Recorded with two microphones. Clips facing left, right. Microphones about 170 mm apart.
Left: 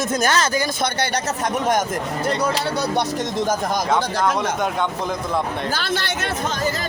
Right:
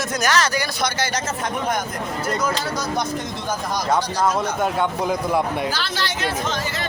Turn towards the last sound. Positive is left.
turn(degrees=55)  # may be behind; listen again after turning